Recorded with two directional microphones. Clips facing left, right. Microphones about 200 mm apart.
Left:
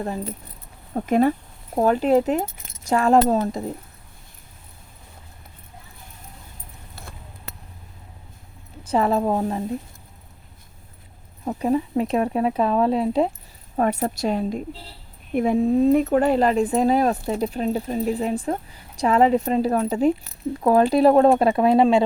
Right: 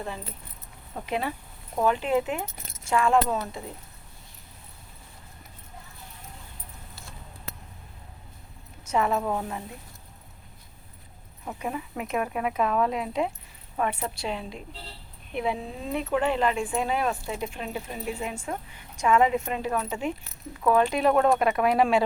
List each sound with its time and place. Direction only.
0.9 s a woman's voice: 45° left (ahead or behind)
7.0 s basketball bounce: 55° left (ahead or behind)
8.8 s speech: 35° left (ahead or behind)
11.4 s a woman's voice: 35° left (ahead or behind)